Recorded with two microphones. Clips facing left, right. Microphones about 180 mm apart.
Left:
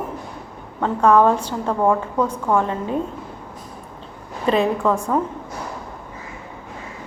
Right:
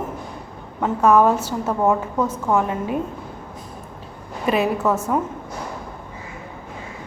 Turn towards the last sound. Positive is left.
turn(degrees=-5)  # may be behind; listen again after turning